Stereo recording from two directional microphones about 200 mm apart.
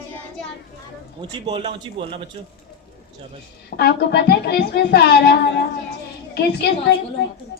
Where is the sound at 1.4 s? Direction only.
30° right (ahead or behind).